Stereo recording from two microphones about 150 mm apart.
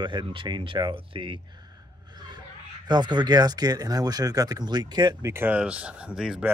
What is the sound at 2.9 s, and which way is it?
Speech, 30° right (ahead or behind).